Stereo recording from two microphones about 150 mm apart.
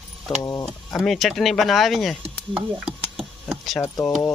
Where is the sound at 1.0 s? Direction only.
Centre (ahead or behind).